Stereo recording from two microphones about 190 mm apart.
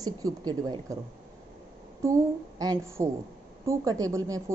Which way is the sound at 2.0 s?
20° right (ahead or behind).